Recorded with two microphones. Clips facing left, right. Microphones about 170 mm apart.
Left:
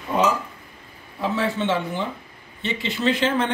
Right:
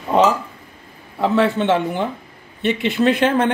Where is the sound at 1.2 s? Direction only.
65° right (ahead or behind).